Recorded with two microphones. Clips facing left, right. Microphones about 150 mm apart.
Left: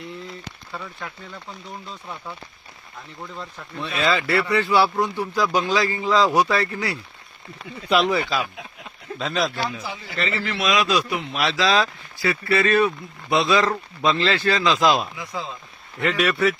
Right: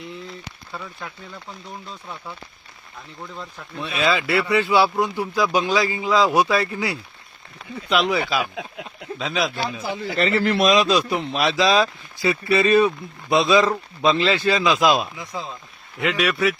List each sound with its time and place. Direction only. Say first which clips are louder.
0.7 s speech: even; 5° right (ahead or behind)
3.8 s speech: right 1 dB; 10° right (ahead or behind)
7.9 s speech: left 1 dB; centre (ahead or behind)
9.9 s speech: right 6 dB; 45° right (ahead or behind)
10.7 s speech: left 1 dB; 25° right (ahead or behind)
16.0 s speech: even; centre (ahead or behind)